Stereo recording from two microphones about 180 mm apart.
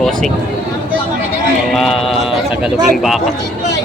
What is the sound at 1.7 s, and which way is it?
Speech, centre (ahead or behind).